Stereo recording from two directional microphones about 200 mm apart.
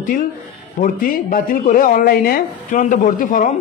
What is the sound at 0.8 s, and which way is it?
Speech, 45° left (ahead or behind).